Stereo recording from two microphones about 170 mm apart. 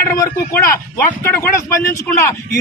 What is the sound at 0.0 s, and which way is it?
A man's voice, 15° left (ahead or behind).